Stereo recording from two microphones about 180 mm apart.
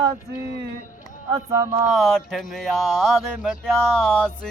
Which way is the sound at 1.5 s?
15° right (ahead or behind).